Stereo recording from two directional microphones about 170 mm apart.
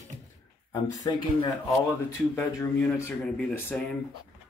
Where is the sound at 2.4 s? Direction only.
15° left (ahead or behind).